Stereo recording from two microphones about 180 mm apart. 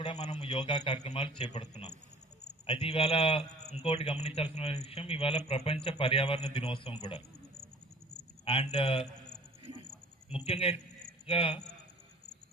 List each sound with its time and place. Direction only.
0.0 s a man's voice: 25° left (ahead or behind)
8.4 s a man's voice: 30° left (ahead or behind)
10.2 s a man's voice: 35° left (ahead or behind)